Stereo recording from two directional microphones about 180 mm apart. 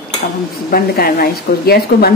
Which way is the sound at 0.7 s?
55° left (ahead or behind).